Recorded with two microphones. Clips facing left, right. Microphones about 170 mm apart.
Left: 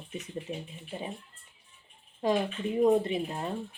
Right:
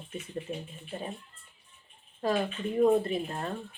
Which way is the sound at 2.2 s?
15° left (ahead or behind).